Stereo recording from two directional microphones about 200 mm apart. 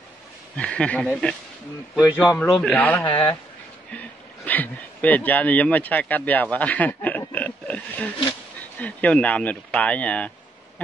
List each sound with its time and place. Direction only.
0.6 s speech: 5° left (ahead or behind)
2.0 s speech: 5° right (ahead or behind)
3.1 s speech: 25° left (ahead or behind)
4.5 s speech: 10° left (ahead or behind)